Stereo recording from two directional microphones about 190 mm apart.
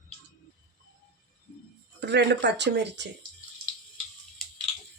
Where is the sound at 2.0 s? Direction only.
65° right (ahead or behind).